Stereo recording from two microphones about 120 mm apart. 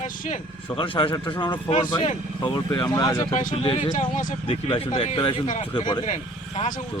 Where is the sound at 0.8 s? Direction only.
45° left (ahead or behind).